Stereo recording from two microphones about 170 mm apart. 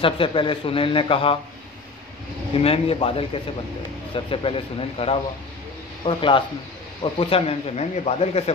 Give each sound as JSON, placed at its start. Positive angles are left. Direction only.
{"t": 0.0, "sound": "speech", "side_deg": 30}
{"t": 2.6, "sound": "speech", "side_deg": 35}